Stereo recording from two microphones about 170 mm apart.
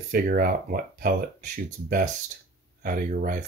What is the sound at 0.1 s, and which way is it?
Speech, 55° right (ahead or behind).